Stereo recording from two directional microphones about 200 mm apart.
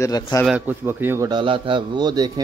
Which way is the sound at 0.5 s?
10° right (ahead or behind).